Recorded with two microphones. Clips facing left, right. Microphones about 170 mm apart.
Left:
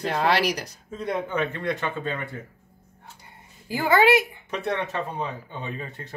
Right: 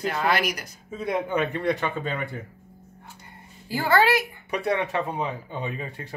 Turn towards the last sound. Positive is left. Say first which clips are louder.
# right 2 dB
turn(degrees=-15)  # may be behind; listen again after turning